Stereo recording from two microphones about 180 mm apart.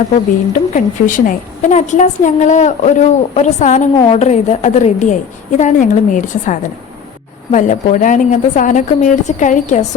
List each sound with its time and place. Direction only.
0.5 s a woman's voice: 45° left (ahead or behind)
3.9 s a woman's voice: 25° left (ahead or behind)
4.2 s a woman's voice: 40° left (ahead or behind)